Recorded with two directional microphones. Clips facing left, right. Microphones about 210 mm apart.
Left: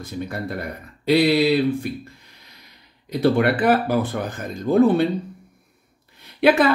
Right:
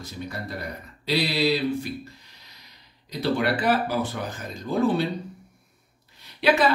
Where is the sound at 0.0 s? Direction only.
55° left (ahead or behind).